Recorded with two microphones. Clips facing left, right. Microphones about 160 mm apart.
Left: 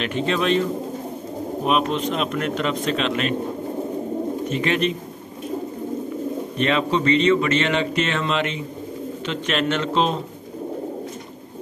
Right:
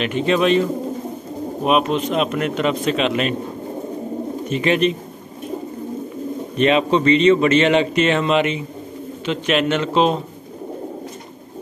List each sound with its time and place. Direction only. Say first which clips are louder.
0.0 s speech: right 4 dB; 5° right (ahead or behind)
1.7 s speech: right 4 dB; 5° right (ahead or behind)
4.5 s speech: right 6 dB; 20° right (ahead or behind)
6.6 s speech: right 5 dB; 20° right (ahead or behind)